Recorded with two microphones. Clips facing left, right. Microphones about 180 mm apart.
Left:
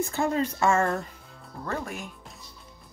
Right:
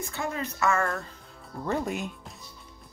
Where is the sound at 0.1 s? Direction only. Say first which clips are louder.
Left 6 dB; 30° left (ahead or behind).